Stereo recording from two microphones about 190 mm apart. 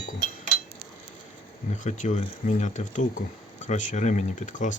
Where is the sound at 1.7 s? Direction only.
40° left (ahead or behind).